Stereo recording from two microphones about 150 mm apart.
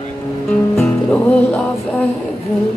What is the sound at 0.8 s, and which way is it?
Music, 5° left (ahead or behind).